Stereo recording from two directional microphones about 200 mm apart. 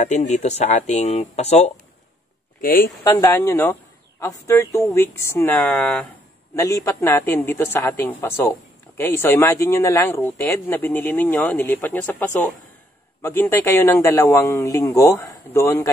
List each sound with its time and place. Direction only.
0.0 s speech: 35° left (ahead or behind)
3.0 s speech: 15° left (ahead or behind)